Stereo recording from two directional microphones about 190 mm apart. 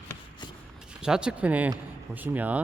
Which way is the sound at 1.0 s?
5° right (ahead or behind).